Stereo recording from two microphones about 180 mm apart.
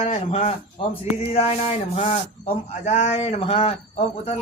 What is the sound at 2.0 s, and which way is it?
A man's voice, 35° left (ahead or behind).